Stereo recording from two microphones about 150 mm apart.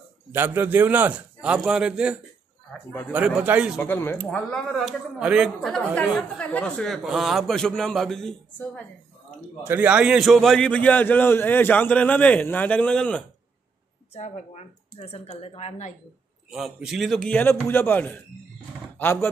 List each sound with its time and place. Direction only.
0.3 s a man's voice: 15° right (ahead or behind)
3.7 s a man's voice: 15° left (ahead or behind); by 5.7 s 5° right (ahead or behind)
5.7 s a man's voice: 10° left (ahead or behind)
9.7 s a man's voice: 10° right (ahead or behind); by 13.2 s 5° left (ahead or behind)
14.1 s speech: 45° left (ahead or behind)
16.4 s a man's voice: 5° right (ahead or behind)